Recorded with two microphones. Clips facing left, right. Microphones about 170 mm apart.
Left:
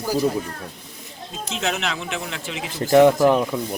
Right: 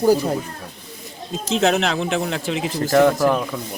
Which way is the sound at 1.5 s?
35° right (ahead or behind).